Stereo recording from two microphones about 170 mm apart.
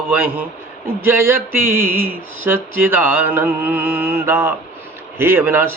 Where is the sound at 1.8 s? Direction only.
55° right (ahead or behind).